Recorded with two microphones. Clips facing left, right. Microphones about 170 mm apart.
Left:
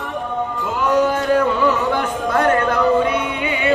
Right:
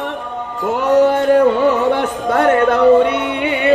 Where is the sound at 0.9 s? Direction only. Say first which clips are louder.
Right 5 dB; 65° right (ahead or behind).